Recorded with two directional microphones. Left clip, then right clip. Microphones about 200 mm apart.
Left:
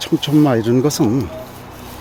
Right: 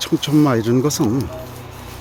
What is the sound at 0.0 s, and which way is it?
Speech, centre (ahead or behind).